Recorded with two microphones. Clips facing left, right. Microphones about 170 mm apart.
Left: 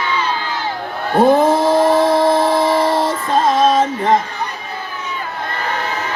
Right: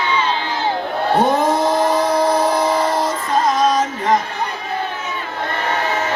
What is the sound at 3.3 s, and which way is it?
Music, 30° left (ahead or behind).